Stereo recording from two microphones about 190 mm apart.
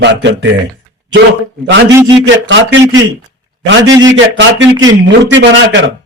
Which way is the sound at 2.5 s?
70° right (ahead or behind).